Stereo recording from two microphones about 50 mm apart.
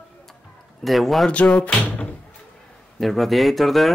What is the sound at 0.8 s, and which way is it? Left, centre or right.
Speech, centre.